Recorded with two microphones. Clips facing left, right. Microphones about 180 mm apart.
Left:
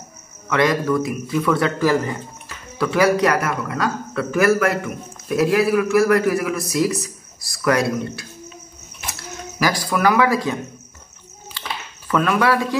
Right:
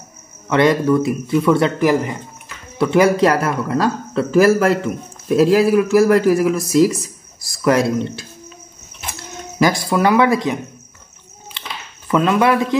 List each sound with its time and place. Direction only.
0.5 s a man's voice: 25° right (ahead or behind)
9.6 s a man's voice: 25° right (ahead or behind)
12.1 s a man's voice: 20° right (ahead or behind)